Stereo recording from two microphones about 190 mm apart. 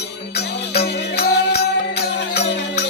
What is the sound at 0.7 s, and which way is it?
Music, 55° left (ahead or behind).